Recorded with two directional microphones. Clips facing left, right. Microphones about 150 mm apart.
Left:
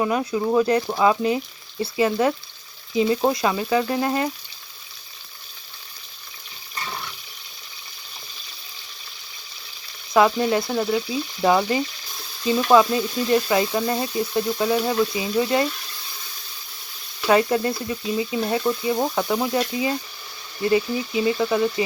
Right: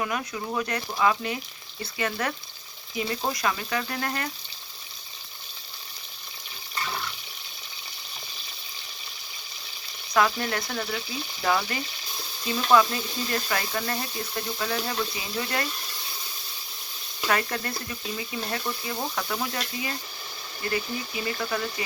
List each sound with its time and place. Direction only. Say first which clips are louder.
0.0 s speech: left 9 dB; 30° left (ahead or behind)
2.9 s frying: left 10 dB; 25° left (ahead or behind)
3.2 s speech: left 8 dB; 25° left (ahead or behind)
10.2 s speech: left 7 dB; 20° left (ahead or behind)
17.2 s speech: left 9 dB; 20° left (ahead or behind)